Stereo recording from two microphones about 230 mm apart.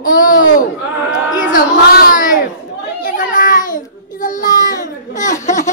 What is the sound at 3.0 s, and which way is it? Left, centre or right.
Baby cry, left.